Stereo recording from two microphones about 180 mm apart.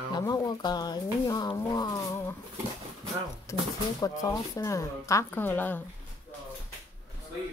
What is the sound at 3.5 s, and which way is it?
Speech, 15° left (ahead or behind).